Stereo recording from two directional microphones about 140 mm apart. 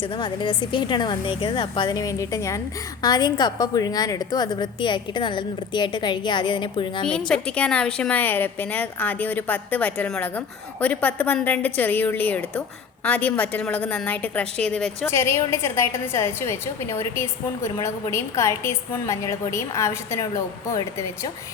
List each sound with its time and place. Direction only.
0.0 s a woman's voice: 35° left (ahead or behind)
7.0 s a woman's voice: 5° left (ahead or behind)
15.0 s a woman's voice: 20° left (ahead or behind)